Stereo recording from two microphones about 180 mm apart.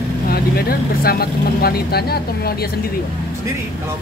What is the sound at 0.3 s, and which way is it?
Speech, 60° left (ahead or behind).